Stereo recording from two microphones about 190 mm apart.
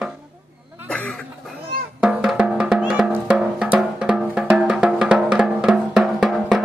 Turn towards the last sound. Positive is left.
turn(degrees=0)  # may be behind; listen again after turning